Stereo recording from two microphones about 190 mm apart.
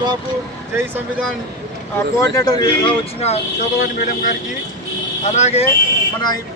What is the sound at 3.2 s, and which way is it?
Speech, 35° left (ahead or behind).